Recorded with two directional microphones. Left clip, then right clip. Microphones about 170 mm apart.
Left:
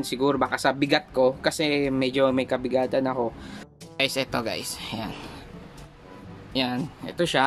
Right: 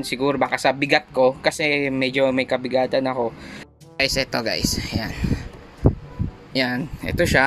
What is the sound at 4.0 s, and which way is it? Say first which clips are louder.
Speech: right 4 dB; 10° right (ahead or behind).